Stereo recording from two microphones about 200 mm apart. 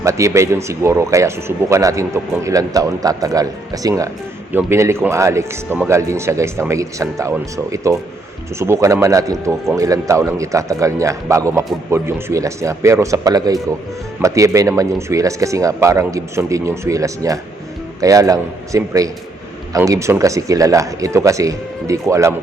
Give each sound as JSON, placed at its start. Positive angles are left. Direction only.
{"t": 0.0, "sound": "speech", "side_deg": -15}